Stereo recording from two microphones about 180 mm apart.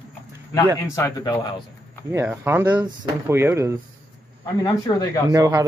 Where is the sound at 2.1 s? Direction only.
10° right (ahead or behind).